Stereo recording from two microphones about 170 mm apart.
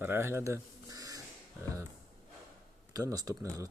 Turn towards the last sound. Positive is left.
turn(degrees=-20)  # may be behind; listen again after turning